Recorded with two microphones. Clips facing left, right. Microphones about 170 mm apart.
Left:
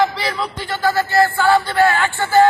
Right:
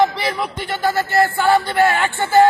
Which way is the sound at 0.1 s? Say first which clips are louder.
Right 1 dB; 20° right (ahead or behind).